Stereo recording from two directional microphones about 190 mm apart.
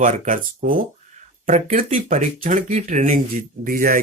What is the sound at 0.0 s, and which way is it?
Speech, 40° right (ahead or behind).